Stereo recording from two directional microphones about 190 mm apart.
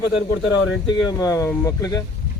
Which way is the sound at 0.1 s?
70° left (ahead or behind).